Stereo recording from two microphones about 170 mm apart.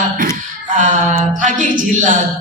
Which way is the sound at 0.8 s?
50° right (ahead or behind).